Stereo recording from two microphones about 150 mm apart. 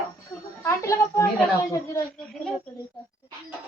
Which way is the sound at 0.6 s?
20° left (ahead or behind).